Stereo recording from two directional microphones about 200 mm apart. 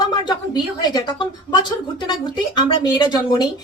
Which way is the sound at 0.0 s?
20° left (ahead or behind).